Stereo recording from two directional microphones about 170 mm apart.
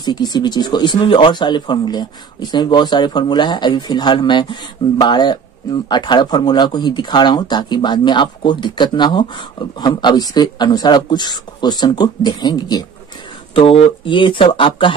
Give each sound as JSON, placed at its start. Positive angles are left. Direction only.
{"t": 0.0, "sound": "speech", "side_deg": 25}
{"t": 14.0, "sound": "speech", "side_deg": 30}